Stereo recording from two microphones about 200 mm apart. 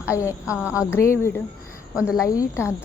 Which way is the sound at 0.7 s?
15° left (ahead or behind).